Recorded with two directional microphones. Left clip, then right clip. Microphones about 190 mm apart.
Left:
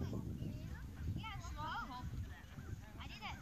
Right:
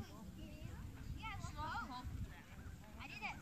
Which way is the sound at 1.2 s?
45° right (ahead or behind).